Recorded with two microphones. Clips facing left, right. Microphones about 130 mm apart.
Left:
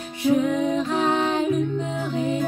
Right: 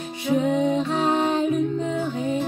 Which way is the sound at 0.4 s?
25° right (ahead or behind).